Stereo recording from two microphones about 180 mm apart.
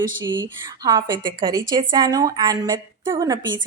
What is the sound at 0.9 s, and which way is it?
A woman's voice, 25° right (ahead or behind).